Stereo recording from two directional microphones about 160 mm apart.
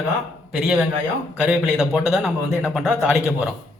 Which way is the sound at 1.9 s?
5° right (ahead or behind).